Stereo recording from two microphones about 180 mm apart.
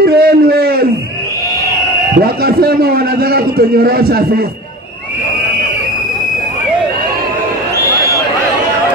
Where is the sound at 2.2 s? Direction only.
55° right (ahead or behind).